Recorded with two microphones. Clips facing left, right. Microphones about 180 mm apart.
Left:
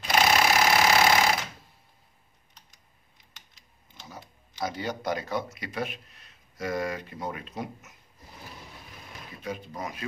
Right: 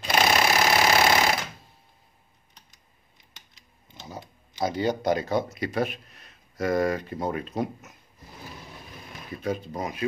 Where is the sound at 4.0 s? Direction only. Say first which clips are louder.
Right 5 dB; 30° right (ahead or behind).